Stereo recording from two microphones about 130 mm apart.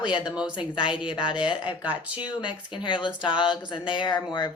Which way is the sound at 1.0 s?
40° left (ahead or behind).